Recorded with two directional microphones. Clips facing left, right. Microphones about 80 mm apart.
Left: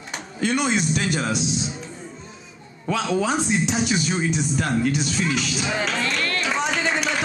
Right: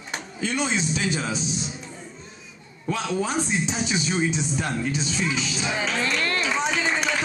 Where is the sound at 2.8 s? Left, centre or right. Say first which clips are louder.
Left 3 dB; left.